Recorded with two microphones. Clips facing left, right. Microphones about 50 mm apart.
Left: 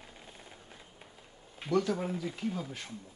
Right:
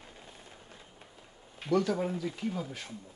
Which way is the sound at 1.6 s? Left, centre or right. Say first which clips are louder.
Right 2 dB; centre.